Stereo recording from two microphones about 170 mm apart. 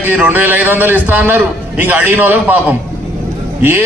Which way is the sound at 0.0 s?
10° right (ahead or behind).